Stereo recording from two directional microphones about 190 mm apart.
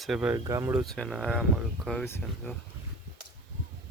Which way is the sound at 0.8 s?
Centre (ahead or behind).